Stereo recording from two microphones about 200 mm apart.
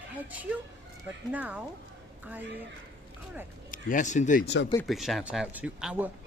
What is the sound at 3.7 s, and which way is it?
Speech, 40° left (ahead or behind).